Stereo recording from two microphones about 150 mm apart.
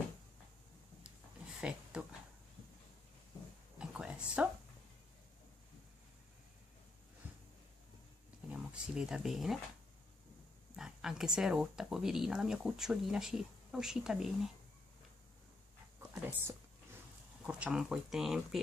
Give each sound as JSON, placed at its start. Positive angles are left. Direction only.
{"t": 1.6, "sound": "a sound", "side_deg": -5}
{"t": 3.7, "sound": "a sound", "side_deg": -5}
{"t": 8.5, "sound": "speech", "side_deg": -5}
{"t": 10.8, "sound": "speech", "side_deg": -5}
{"t": 16.0, "sound": "dog", "side_deg": -15}
{"t": 17.4, "sound": "speech", "side_deg": -5}